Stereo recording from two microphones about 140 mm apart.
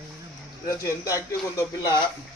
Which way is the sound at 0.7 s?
20° left (ahead or behind).